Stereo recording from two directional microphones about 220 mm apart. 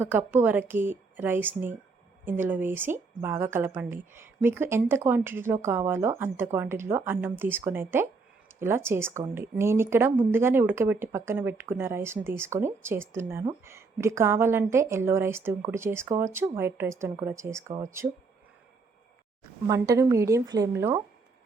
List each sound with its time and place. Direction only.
0.0 s speech: 10° right (ahead or behind)
19.6 s speech: 15° right (ahead or behind)